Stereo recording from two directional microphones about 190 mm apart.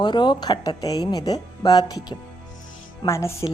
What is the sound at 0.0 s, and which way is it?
A woman's voice, 25° left (ahead or behind).